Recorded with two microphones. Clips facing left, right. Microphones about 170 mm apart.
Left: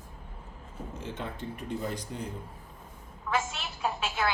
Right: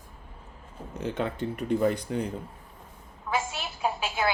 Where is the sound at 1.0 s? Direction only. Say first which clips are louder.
Right 9 dB; 70° right (ahead or behind).